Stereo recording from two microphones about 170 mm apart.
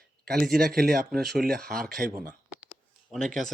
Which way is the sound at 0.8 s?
Centre (ahead or behind).